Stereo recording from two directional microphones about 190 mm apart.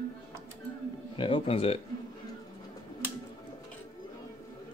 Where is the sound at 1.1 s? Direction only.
25° left (ahead or behind).